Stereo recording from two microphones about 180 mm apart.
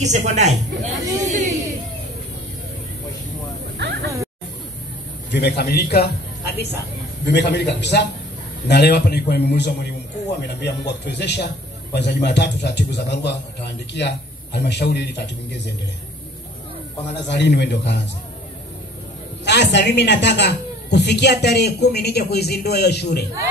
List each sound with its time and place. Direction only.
0.0 s a man's voice: 40° right (ahead or behind)
1.1 s chatter: 40° right (ahead or behind)
3.7 s a sound: 70° right (ahead or behind)
5.3 s a man's voice: 70° left (ahead or behind)
17.1 s a man's voice: 70° left (ahead or behind)
19.4 s a man's voice: 75° left (ahead or behind)